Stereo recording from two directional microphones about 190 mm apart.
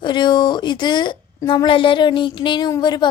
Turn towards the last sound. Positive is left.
turn(degrees=20)  # may be behind; listen again after turning